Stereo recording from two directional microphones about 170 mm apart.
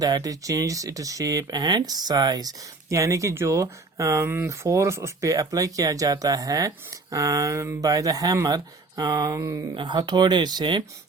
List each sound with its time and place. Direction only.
0.0 s speech: 20° right (ahead or behind)